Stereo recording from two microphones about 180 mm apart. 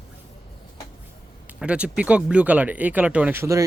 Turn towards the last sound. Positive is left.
turn(degrees=-15)  # may be behind; listen again after turning